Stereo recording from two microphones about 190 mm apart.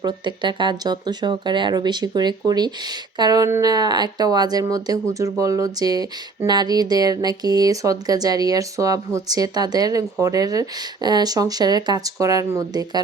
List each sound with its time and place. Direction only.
0.0 s speech: 25° right (ahead or behind)